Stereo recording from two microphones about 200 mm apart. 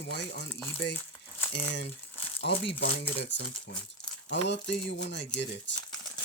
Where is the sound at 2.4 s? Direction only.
60° left (ahead or behind).